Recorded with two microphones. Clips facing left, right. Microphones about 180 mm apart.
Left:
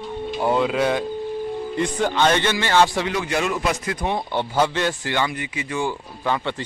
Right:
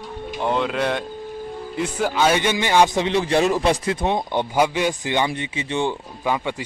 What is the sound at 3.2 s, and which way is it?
A man's voice, 35° right (ahead or behind).